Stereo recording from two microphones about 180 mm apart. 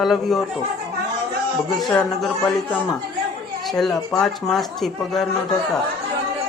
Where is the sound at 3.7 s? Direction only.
Centre (ahead or behind).